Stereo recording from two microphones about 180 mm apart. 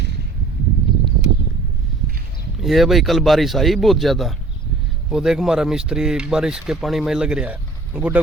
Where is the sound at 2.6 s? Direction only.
Centre (ahead or behind).